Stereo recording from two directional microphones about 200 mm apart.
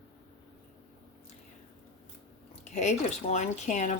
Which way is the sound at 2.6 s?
35° left (ahead or behind).